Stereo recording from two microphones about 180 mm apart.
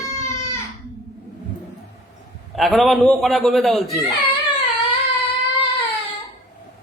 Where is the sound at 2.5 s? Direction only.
Centre (ahead or behind).